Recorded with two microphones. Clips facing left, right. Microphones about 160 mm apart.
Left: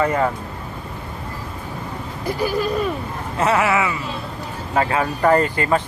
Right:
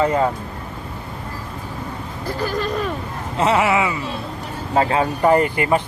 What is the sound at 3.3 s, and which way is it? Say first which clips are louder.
Speech: right 1 dB; 20° right (ahead or behind).